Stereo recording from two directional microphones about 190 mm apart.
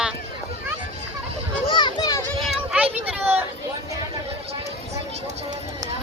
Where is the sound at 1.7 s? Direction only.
25° left (ahead or behind).